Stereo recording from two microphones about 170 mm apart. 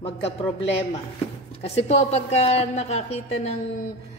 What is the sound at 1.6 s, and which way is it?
A woman's voice, 40° left (ahead or behind).